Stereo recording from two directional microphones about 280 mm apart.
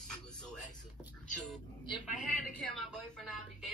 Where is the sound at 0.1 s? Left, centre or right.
Centre.